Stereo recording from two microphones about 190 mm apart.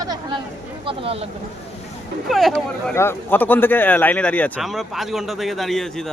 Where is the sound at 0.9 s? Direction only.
30° right (ahead or behind).